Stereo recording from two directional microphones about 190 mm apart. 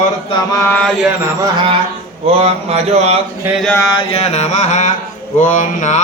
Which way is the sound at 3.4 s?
Centre (ahead or behind).